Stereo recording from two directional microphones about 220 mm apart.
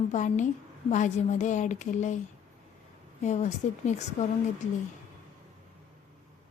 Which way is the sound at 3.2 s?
30° left (ahead or behind).